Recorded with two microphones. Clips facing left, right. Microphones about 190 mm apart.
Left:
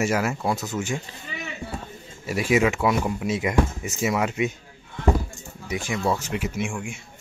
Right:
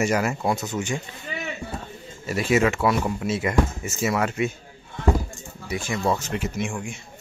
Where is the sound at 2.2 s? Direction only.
10° left (ahead or behind).